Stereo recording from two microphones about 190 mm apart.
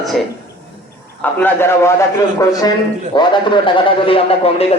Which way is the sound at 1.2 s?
10° left (ahead or behind).